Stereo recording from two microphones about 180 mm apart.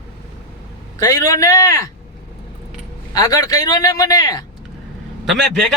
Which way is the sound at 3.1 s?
20° left (ahead or behind).